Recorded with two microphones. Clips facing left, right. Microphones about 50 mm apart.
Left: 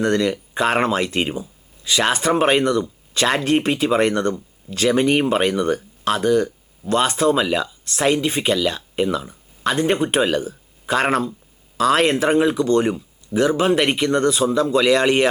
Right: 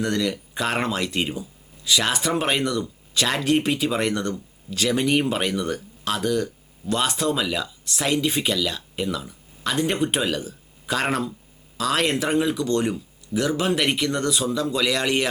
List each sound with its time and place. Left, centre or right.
0.0 s speech: centre